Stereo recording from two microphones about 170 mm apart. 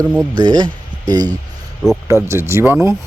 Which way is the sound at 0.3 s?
25° right (ahead or behind).